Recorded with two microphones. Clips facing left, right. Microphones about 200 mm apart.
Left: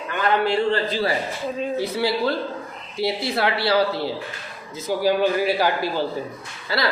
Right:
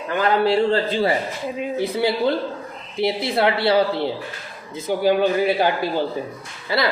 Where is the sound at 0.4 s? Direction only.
30° right (ahead or behind).